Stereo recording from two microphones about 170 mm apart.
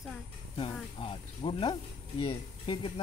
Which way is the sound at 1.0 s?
30° left (ahead or behind).